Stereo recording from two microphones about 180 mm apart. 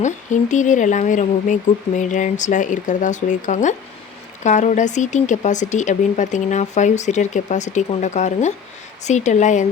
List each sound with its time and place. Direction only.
0.0 s speech: 45° left (ahead or behind)